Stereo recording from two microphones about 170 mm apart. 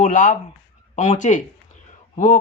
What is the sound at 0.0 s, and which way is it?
Speech, 45° left (ahead or behind).